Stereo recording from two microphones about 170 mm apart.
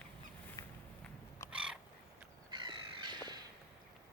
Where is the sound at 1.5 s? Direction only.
5° right (ahead or behind).